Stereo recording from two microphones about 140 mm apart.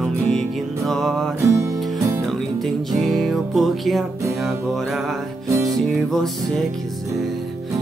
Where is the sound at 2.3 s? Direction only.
Centre (ahead or behind).